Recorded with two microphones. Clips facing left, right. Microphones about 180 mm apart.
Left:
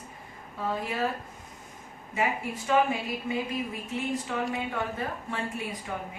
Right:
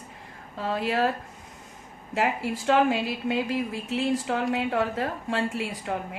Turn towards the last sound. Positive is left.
turn(degrees=-80)